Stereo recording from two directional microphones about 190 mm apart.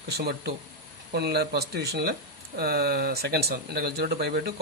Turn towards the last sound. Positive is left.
turn(degrees=-55)  # may be behind; listen again after turning